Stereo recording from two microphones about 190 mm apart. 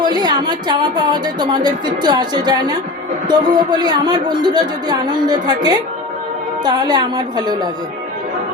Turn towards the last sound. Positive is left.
turn(degrees=-20)  # may be behind; listen again after turning